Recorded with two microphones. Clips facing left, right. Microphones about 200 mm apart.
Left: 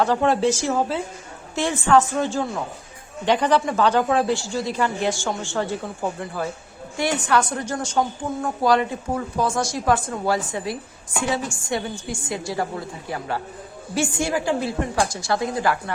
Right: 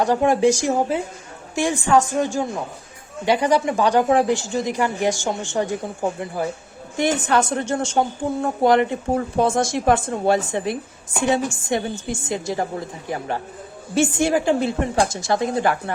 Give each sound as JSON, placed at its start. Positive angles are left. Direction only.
{"t": 0.0, "sound": "speech", "side_deg": -15}
{"t": 8.7, "sound": "speech", "side_deg": -20}